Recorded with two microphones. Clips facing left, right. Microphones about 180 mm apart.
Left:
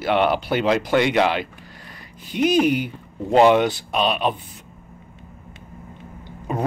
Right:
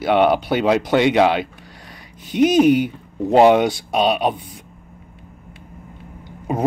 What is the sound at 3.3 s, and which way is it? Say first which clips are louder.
Speech: right 2 dB; 10° right (ahead or behind).